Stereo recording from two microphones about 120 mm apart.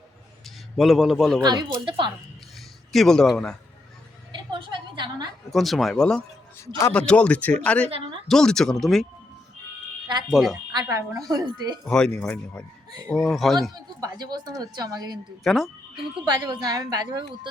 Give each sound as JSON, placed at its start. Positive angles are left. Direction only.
{"t": 0.4, "sound": "a man's voice", "side_deg": 0}
{"t": 1.5, "sound": "a woman's voice", "side_deg": -35}
{"t": 2.6, "sound": "a sound", "side_deg": 0}
{"t": 4.5, "sound": "a sound", "side_deg": -40}
{"t": 5.5, "sound": "speech", "side_deg": 0}
{"t": 7.9, "sound": "a sound", "side_deg": -50}
{"t": 8.3, "sound": "speech", "side_deg": 5}
{"t": 10.3, "sound": "speech", "side_deg": -5}
{"t": 10.7, "sound": "a woman's voice", "side_deg": -30}
{"t": 11.9, "sound": "speech", "side_deg": 5}
{"t": 13.6, "sound": "a woman's voice", "side_deg": -30}
{"t": 15.4, "sound": "speech", "side_deg": 0}
{"t": 16.2, "sound": "a woman's voice", "side_deg": -35}